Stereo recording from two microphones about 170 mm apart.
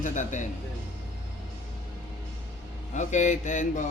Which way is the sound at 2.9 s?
45° left (ahead or behind).